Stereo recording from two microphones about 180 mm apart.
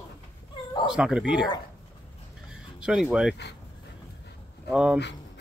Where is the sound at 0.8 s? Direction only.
5° right (ahead or behind).